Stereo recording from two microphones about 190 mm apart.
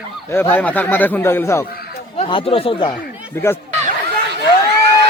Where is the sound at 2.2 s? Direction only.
30° left (ahead or behind).